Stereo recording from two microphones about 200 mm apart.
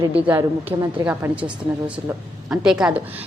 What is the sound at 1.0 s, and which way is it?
Speech, 5° right (ahead or behind).